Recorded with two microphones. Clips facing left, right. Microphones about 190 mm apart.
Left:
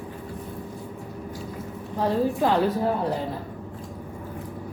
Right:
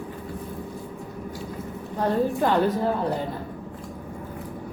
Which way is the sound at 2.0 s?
5° left (ahead or behind).